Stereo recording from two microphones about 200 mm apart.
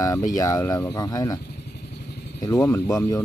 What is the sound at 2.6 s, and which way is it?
Speech, 15° left (ahead or behind).